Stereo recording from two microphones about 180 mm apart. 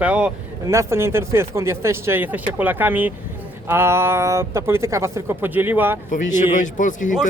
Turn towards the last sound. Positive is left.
turn(degrees=45)  # may be behind; listen again after turning